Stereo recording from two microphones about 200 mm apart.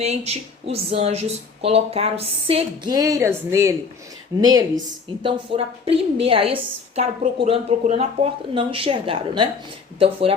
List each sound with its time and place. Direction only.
0.0 s a woman's voice: 30° right (ahead or behind)